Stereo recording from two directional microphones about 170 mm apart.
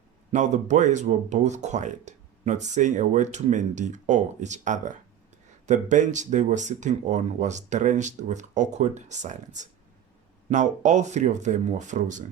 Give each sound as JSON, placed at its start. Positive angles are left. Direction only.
{"t": 0.3, "sound": "speech", "side_deg": -45}